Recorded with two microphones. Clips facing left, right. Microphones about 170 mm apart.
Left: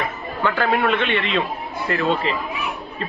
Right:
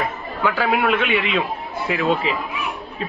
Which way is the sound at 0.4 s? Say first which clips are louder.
Even; 5° right (ahead or behind).